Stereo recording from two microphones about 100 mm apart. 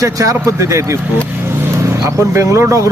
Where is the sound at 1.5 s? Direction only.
25° right (ahead or behind).